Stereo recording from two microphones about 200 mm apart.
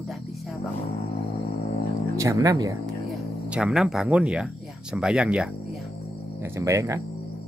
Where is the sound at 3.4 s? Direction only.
5° right (ahead or behind).